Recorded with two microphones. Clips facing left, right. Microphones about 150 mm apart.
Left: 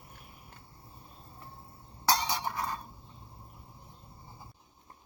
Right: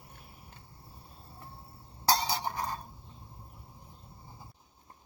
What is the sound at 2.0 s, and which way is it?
Chink, 35° right (ahead or behind).